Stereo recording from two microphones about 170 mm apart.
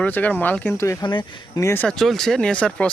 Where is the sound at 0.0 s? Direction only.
10° left (ahead or behind).